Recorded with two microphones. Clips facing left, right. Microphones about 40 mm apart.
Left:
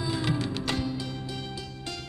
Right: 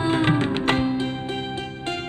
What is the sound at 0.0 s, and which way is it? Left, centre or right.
Music, right.